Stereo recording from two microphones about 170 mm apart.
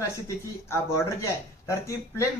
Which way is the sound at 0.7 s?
15° left (ahead or behind).